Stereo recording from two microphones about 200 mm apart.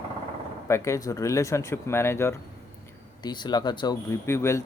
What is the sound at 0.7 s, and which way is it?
Speech, 15° left (ahead or behind).